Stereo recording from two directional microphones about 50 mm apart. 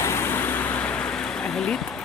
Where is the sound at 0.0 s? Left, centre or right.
Left.